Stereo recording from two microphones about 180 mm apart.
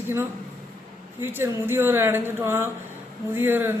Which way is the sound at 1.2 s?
10° right (ahead or behind).